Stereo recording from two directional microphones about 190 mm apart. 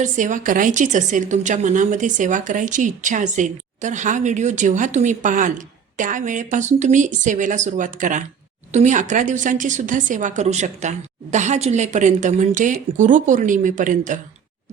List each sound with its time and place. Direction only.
0.0 s a woman's voice: 40° right (ahead or behind)